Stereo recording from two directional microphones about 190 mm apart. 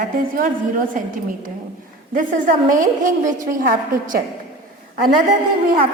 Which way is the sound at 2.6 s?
45° right (ahead or behind).